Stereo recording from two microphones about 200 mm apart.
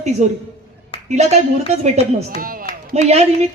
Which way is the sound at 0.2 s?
35° right (ahead or behind).